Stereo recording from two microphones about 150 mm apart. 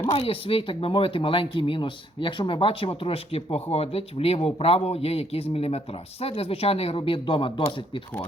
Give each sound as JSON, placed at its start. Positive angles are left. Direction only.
{"t": 0.1, "sound": "speech", "side_deg": 40}